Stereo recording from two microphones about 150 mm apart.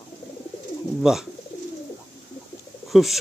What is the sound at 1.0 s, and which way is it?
Speech, 5° right (ahead or behind).